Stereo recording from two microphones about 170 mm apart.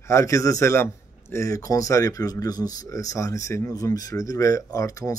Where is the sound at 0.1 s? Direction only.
20° left (ahead or behind).